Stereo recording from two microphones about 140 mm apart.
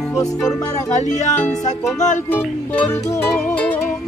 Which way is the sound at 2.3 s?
10° left (ahead or behind).